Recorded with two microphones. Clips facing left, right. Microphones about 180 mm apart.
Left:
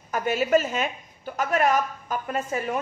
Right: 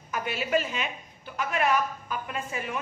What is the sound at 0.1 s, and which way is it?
A woman's voice, 45° left (ahead or behind).